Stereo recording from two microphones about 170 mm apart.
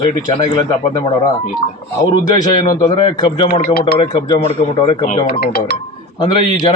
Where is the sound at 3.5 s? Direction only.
65° left (ahead or behind).